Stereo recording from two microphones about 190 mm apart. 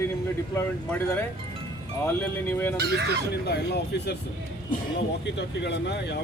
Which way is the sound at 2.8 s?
60° right (ahead or behind).